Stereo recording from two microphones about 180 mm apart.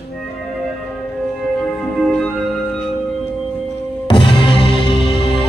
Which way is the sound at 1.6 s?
Centre (ahead or behind).